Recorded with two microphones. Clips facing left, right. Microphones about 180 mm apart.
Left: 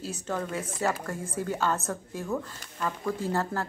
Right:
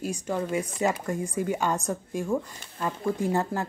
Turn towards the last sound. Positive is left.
turn(degrees=-15)  # may be behind; listen again after turning